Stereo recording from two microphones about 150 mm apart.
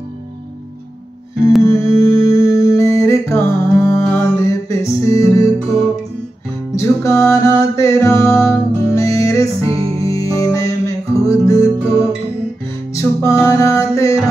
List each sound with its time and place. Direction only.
1.7 s music: 20° left (ahead or behind)
6.7 s music: 20° left (ahead or behind)
9.7 s music: 40° right (ahead or behind)
10.0 s music: 20° left (ahead or behind)